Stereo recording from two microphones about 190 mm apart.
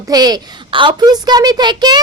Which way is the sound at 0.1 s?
20° right (ahead or behind).